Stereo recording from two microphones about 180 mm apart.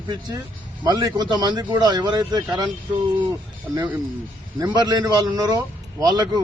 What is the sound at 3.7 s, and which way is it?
Speech, 15° right (ahead or behind).